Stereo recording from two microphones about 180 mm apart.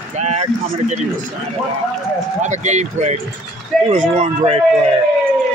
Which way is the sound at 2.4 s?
40° right (ahead or behind).